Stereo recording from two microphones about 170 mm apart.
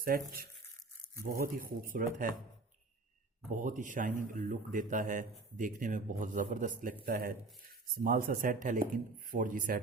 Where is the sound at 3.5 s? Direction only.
50° right (ahead or behind).